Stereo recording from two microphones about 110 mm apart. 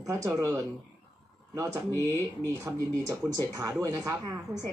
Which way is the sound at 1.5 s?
25° right (ahead or behind).